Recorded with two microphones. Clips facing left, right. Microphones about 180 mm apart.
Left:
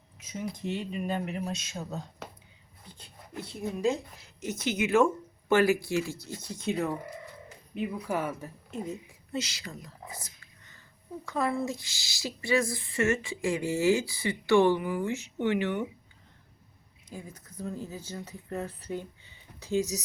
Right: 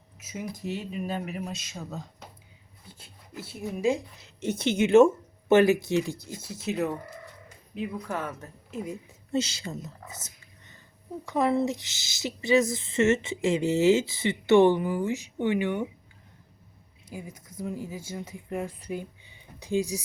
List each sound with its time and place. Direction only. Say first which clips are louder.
0.2 s speech: even; 10° right (ahead or behind)
4.4 s speech: right 5 dB; 30° right (ahead or behind); by 6.9 s 5° right (ahead or behind)
7.8 s speech: left 1 dB; 10° left (ahead or behind)
8.7 s speech: right 2 dB; centre (ahead or behind)
9.3 s speech: right 6 dB; 25° right (ahead or behind)
10.1 s dog: left 1 dB; 20° right (ahead or behind)
11.3 s speech: right 5 dB; 20° right (ahead or behind)
14.8 s speech: right 3 dB; 35° right (ahead or behind)
15.0 s speech: right 2 dB; 15° right (ahead or behind)
17.1 s speech: right 3 dB; 10° right (ahead or behind)